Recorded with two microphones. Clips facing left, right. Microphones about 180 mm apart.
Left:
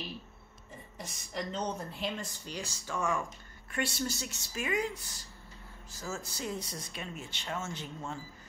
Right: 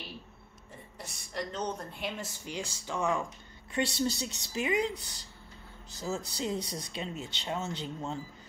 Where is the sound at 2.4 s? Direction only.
15° right (ahead or behind).